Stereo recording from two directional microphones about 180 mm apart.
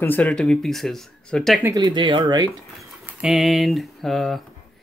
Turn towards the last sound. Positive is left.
turn(degrees=0)  # may be behind; listen again after turning